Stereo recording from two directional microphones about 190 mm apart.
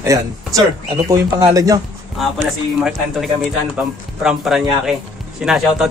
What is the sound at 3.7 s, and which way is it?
A man's voice, 5° right (ahead or behind).